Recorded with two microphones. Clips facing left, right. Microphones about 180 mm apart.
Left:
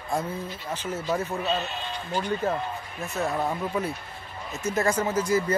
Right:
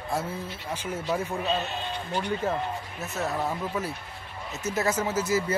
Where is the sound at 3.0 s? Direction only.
Centre (ahead or behind).